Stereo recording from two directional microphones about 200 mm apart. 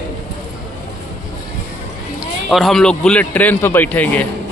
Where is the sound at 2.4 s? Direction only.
Centre (ahead or behind).